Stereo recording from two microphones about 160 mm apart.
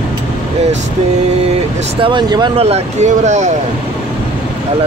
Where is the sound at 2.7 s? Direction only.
45° right (ahead or behind).